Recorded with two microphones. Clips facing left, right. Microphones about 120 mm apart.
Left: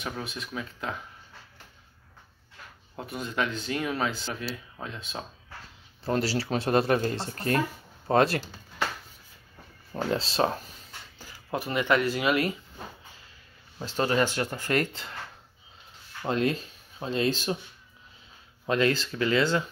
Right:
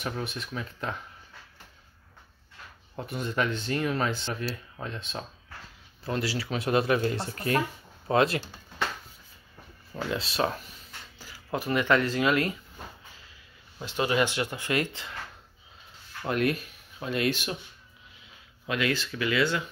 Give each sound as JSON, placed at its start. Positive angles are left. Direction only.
{"t": 0.0, "sound": "speech", "side_deg": 0}
{"t": 3.1, "sound": "speech", "side_deg": 0}
{"t": 6.0, "sound": "speech", "side_deg": 30}
{"t": 10.1, "sound": "speech", "side_deg": 30}
{"t": 11.5, "sound": "speech", "side_deg": 20}
{"t": 13.8, "sound": "speech", "side_deg": 40}
{"t": 16.3, "sound": "speech", "side_deg": 25}
{"t": 18.7, "sound": "speech", "side_deg": 35}